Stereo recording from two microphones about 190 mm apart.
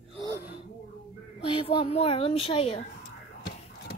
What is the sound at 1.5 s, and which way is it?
A child's voice, 30° left (ahead or behind).